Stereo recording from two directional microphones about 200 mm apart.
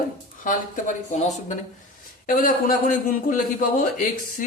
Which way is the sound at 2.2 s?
45° left (ahead or behind).